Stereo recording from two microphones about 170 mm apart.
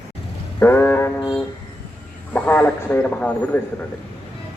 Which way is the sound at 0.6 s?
10° left (ahead or behind).